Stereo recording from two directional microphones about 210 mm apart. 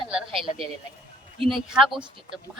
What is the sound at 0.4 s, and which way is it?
Speech, 25° right (ahead or behind).